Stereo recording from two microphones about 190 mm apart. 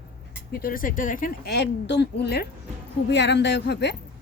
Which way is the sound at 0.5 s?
50° left (ahead or behind).